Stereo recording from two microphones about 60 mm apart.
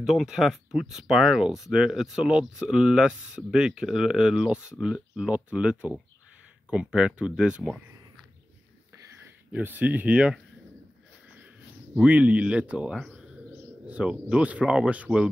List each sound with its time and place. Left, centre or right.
0.0 s speech: centre
9.6 s speech: right
11.3 s a sound: right
14.3 s speech: right